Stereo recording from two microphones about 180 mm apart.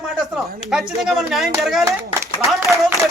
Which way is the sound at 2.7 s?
15° right (ahead or behind).